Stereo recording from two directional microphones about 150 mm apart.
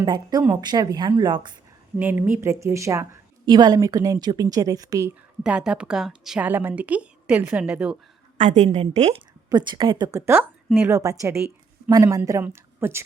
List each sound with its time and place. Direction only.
0.0 s a woman's voice: 30° right (ahead or behind)
2.0 s a woman's voice: 10° right (ahead or behind)
5.4 s a woman's voice: 5° right (ahead or behind)
8.4 s a woman's voice: 55° right (ahead or behind)
9.5 s a woman's voice: 30° right (ahead or behind)
10.1 s a woman's voice: 15° right (ahead or behind)